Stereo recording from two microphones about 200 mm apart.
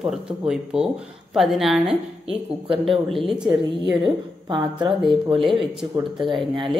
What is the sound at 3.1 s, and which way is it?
Speech, centre (ahead or behind).